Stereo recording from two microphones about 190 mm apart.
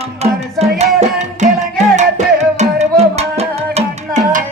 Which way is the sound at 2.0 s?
35° right (ahead or behind).